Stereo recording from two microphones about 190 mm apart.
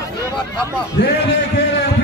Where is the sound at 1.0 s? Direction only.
75° left (ahead or behind).